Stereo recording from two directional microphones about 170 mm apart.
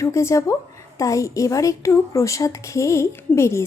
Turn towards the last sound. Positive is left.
turn(degrees=15)  # may be behind; listen again after turning